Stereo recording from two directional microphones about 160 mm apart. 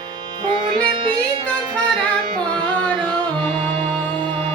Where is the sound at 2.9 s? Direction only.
30° right (ahead or behind).